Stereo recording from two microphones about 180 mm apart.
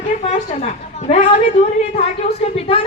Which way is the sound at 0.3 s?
35° left (ahead or behind).